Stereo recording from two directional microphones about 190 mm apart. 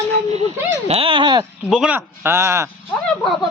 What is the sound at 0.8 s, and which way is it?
Speech, 30° right (ahead or behind).